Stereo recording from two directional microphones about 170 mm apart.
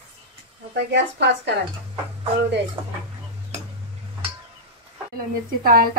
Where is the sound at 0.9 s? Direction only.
90° right.